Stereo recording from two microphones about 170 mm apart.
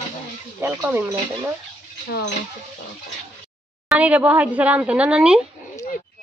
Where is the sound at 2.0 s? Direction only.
70° left (ahead or behind).